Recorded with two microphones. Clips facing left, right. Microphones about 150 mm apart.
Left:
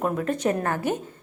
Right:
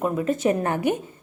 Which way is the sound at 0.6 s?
15° right (ahead or behind).